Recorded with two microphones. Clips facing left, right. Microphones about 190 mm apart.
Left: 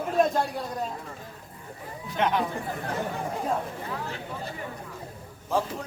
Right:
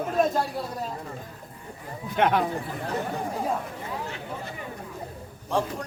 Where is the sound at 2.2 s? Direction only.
55° right (ahead or behind).